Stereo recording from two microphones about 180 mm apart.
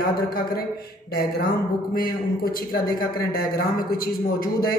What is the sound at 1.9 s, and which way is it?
A man's voice, 55° left (ahead or behind).